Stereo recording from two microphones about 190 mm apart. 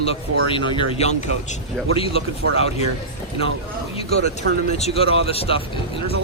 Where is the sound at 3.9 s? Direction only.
30° left (ahead or behind).